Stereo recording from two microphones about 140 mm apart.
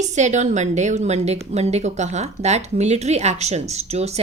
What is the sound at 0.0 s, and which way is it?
A woman's voice, 55° right (ahead or behind).